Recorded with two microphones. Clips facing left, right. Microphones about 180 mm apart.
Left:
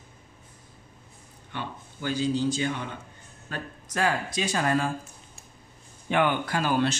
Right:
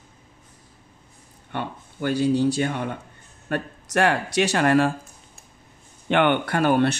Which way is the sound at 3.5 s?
70° right (ahead or behind).